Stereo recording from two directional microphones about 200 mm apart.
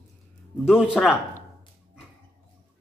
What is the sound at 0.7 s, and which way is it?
Speech, centre (ahead or behind).